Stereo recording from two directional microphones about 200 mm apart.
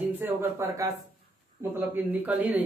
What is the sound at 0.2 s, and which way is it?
A woman's voice, 15° right (ahead or behind).